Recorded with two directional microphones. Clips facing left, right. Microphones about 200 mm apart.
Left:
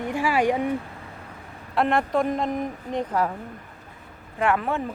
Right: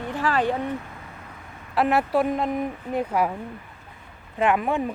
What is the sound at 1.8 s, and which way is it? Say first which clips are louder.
A woman's voice: right 1 dB; 5° right (ahead or behind).